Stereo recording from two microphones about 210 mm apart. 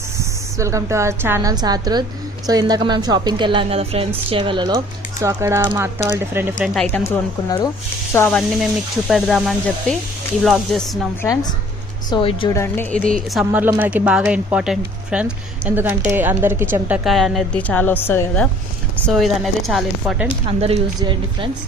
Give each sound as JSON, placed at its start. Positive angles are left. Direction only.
{"t": 0.5, "sound": "a woman's voice", "side_deg": -15}
{"t": 6.7, "sound": "speech", "side_deg": 10}
{"t": 8.4, "sound": "speech", "side_deg": 0}
{"t": 12.1, "sound": "a woman's voice", "side_deg": 25}
{"t": 12.5, "sound": "speech", "side_deg": 10}
{"t": 13.4, "sound": "speech", "side_deg": -10}
{"t": 19.0, "sound": "speech", "side_deg": 0}
{"t": 20.5, "sound": "a woman's voice", "side_deg": -30}